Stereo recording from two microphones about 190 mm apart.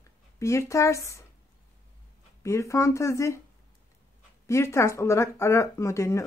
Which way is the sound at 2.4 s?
15° left (ahead or behind).